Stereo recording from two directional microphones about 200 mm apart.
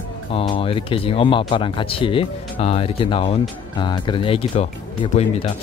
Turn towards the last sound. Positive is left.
turn(degrees=30)  # may be behind; listen again after turning